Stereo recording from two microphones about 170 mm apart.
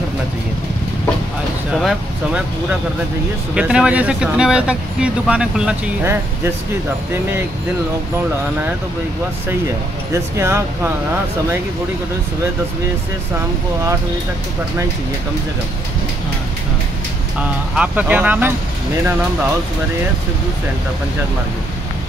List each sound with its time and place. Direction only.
1.7 s speech: centre (ahead or behind)
3.5 s speech: 5° right (ahead or behind)
10.3 s speech: 15° right (ahead or behind)
17.4 s speech: 5° right (ahead or behind)